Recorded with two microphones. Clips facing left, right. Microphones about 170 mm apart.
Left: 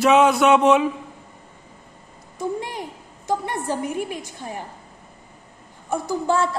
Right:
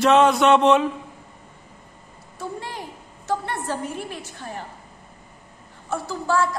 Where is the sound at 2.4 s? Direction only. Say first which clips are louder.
Left 5 dB; 15° left (ahead or behind).